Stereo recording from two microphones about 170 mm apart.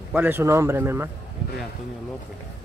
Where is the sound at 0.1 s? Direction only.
10° right (ahead or behind).